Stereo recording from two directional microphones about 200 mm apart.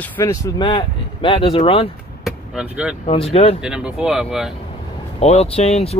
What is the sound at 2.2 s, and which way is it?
Vehicle, 5° right (ahead or behind).